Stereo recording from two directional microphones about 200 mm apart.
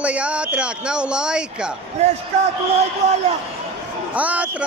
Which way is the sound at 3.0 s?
35° right (ahead or behind).